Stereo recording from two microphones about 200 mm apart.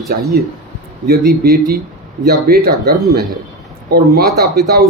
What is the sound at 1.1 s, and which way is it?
Speech, 50° right (ahead or behind).